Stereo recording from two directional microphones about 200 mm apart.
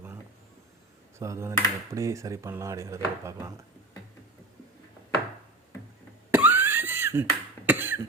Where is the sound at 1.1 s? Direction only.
15° right (ahead or behind).